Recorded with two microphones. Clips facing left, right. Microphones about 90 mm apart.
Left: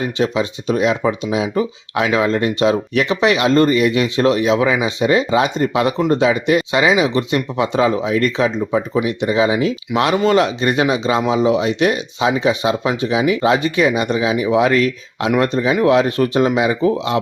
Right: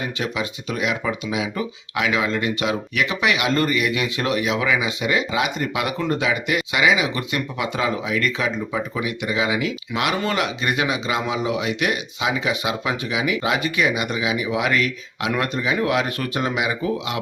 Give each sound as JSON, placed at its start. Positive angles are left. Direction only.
{"t": 0.2, "sound": "speech", "side_deg": 30}